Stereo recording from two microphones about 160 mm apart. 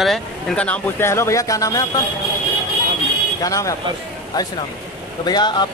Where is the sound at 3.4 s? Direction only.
20° left (ahead or behind).